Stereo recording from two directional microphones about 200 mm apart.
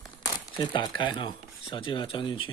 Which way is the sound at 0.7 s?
25° left (ahead or behind).